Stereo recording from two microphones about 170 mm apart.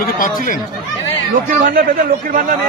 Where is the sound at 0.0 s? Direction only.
55° left (ahead or behind).